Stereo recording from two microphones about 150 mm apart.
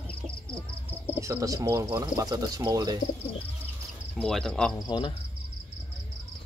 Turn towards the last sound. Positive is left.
turn(degrees=30)  # may be behind; listen again after turning